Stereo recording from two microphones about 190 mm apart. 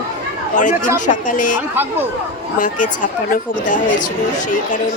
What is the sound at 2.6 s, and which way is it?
Speech, 45° left (ahead or behind).